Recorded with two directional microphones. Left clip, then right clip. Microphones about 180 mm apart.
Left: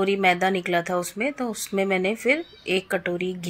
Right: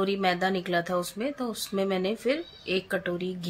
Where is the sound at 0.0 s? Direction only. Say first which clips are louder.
Left 5 dB; 15° left (ahead or behind).